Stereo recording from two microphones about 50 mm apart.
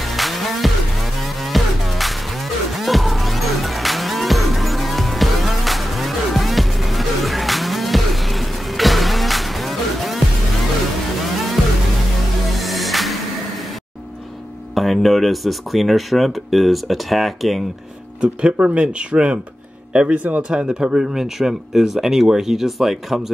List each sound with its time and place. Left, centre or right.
0.1 s music: centre
11.6 s music: centre
14.8 s speech: centre
18.2 s speech: right; by 23.3 s centre